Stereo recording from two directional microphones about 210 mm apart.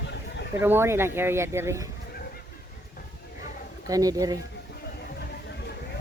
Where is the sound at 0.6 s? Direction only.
10° right (ahead or behind).